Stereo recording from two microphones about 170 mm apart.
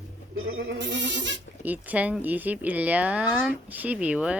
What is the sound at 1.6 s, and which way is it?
Speech, 10° right (ahead or behind).